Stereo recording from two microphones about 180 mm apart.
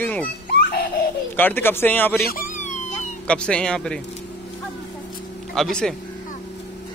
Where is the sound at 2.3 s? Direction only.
50° left (ahead or behind).